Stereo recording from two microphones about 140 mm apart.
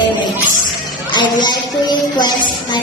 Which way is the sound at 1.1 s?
30° left (ahead or behind).